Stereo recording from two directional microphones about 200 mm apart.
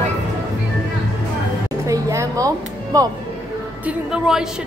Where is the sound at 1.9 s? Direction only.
15° right (ahead or behind).